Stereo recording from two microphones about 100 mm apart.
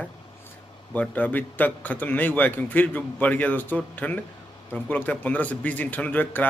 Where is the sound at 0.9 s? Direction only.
15° left (ahead or behind).